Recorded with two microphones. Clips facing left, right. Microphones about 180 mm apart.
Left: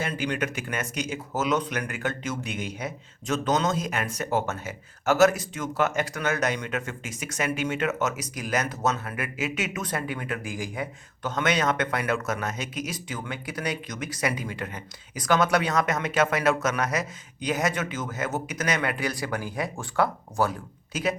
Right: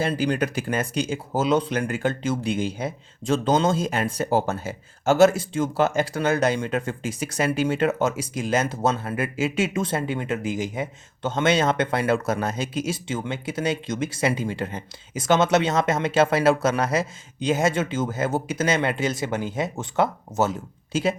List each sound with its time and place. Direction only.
0.0 s speech: 35° right (ahead or behind)